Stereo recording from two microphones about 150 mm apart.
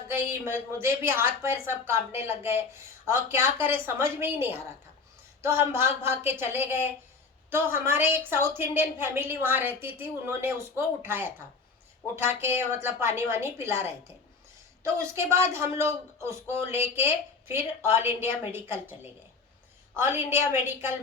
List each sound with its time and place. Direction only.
0.4 s a man's voice: 15° right (ahead or behind)
14.9 s a man's voice: 20° right (ahead or behind)
20.0 s a man's voice: 15° right (ahead or behind)